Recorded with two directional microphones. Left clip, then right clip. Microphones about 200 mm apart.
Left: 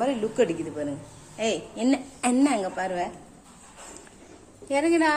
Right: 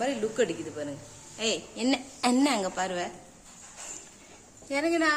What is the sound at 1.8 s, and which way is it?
A woman's voice, 15° right (ahead or behind).